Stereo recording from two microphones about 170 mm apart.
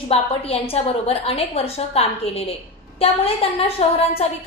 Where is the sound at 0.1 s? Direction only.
35° left (ahead or behind).